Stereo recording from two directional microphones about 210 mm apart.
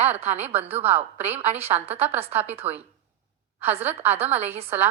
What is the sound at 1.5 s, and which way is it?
A woman's voice, 30° right (ahead or behind).